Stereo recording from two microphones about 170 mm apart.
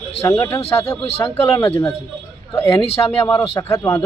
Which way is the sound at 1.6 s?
10° left (ahead or behind).